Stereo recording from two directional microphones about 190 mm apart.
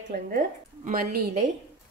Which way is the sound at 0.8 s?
50° right (ahead or behind).